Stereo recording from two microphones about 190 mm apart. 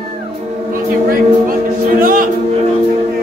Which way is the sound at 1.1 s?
50° right (ahead or behind).